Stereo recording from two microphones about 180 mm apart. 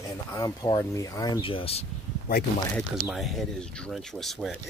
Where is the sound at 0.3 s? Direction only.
20° left (ahead or behind).